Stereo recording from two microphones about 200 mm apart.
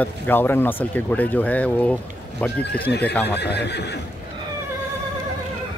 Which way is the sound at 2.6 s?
55° left (ahead or behind).